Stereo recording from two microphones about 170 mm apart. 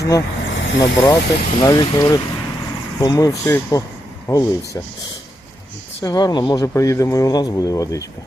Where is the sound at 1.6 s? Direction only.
20° left (ahead or behind).